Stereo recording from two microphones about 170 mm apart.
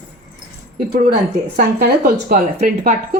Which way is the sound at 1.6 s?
60° right (ahead or behind).